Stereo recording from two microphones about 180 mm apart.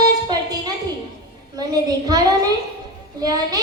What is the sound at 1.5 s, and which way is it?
Child singing, 20° right (ahead or behind).